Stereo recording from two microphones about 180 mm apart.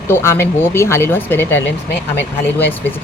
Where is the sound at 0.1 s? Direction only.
15° left (ahead or behind).